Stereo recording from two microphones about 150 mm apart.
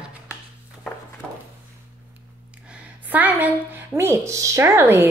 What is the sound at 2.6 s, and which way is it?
A woman's voice, 10° right (ahead or behind).